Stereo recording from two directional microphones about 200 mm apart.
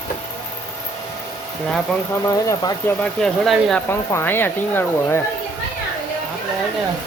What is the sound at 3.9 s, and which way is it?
Speech, 10° left (ahead or behind).